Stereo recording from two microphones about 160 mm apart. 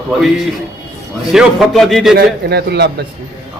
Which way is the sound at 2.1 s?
90° right.